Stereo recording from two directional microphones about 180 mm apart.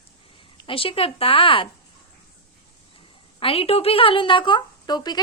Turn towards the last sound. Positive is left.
turn(degrees=20)  # may be behind; listen again after turning